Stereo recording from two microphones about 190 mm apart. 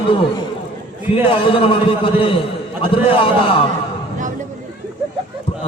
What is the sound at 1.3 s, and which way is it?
A man's voice, 30° left (ahead or behind).